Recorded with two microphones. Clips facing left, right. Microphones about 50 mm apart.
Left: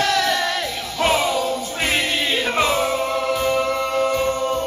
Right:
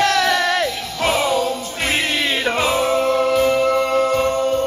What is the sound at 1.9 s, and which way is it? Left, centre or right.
Music, centre.